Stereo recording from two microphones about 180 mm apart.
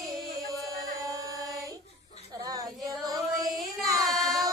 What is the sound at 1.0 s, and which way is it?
Chant, 20° right (ahead or behind).